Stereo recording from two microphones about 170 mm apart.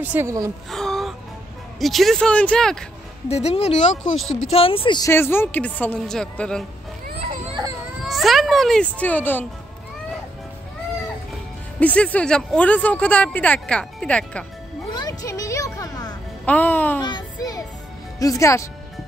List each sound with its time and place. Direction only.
0.0 s a woman's voice: 10° right (ahead or behind)
0.7 s a sound: centre (ahead or behind)
1.8 s speech: centre (ahead or behind)
3.3 s speech: 40° left (ahead or behind)
4.5 s speech: 35° left (ahead or behind)
5.1 s speech: 15° left (ahead or behind)
7.2 s children playing: 35° right (ahead or behind)
8.0 s speech: centre (ahead or behind)
11.8 s speech: 10° left (ahead or behind)
14.9 s music: 25° left (ahead or behind)
16.4 s speech: 10° left (ahead or behind)
17.0 s music: 25° left (ahead or behind)
18.2 s speech: 20° left (ahead or behind)